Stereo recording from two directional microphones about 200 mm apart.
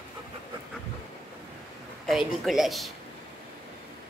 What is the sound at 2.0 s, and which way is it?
Speech, centre (ahead or behind).